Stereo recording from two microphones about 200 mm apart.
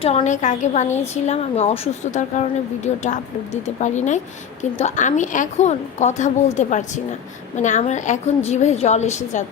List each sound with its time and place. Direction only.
0.0 s a woman's voice: 30° left (ahead or behind)